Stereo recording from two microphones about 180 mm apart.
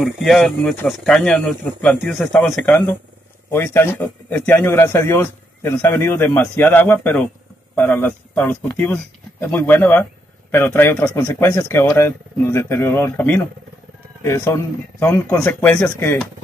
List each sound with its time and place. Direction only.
0.0 s speech: centre (ahead or behind)